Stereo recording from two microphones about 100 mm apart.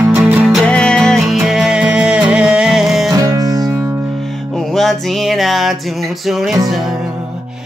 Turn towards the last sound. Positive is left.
turn(degrees=0)  # may be behind; listen again after turning